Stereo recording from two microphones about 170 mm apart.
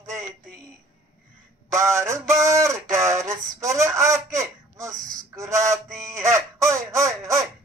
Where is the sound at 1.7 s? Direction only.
15° right (ahead or behind).